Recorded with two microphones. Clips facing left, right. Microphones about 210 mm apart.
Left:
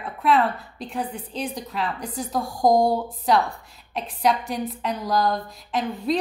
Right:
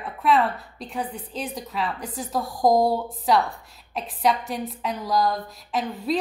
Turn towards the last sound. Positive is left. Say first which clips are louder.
# left 1 dB
turn(degrees=0)  # may be behind; listen again after turning